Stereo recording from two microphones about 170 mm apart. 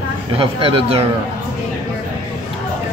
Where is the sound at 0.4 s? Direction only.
35° right (ahead or behind).